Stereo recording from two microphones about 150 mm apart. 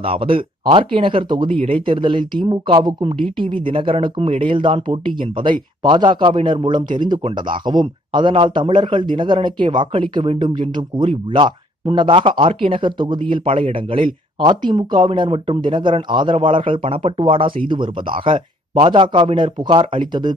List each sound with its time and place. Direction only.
0.0 s speech: 35° right (ahead or behind)